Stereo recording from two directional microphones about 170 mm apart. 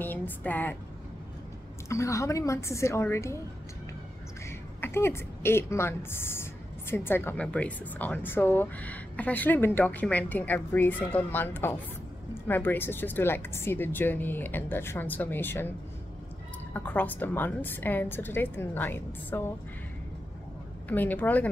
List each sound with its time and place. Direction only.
0.0 s speech: 10° left (ahead or behind)
1.9 s speech: 20° left (ahead or behind)
4.5 s a woman's voice: 15° left (ahead or behind)
16.7 s speech: 10° left (ahead or behind)
20.9 s speech: 10° left (ahead or behind)